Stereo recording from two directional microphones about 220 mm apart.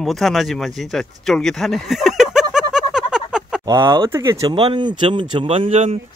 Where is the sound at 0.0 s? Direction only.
Centre (ahead or behind).